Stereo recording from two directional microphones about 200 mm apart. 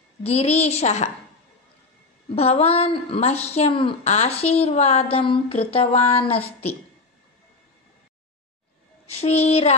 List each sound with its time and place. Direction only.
0.2 s a woman's voice: 30° left (ahead or behind)
2.3 s a woman's voice: 30° left (ahead or behind)
9.2 s a woman's voice: 30° left (ahead or behind)